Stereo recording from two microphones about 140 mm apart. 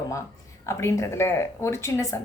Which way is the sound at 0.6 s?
20° left (ahead or behind).